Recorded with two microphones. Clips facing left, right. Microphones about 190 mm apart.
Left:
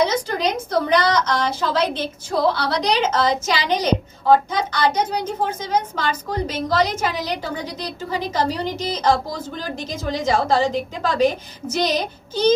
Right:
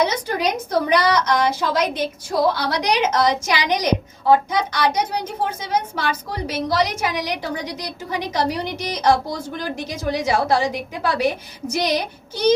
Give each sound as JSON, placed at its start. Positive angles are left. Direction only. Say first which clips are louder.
{"t": 0.0, "sound": "a woman's voice", "louder": "left 1 dB", "side_deg": -10}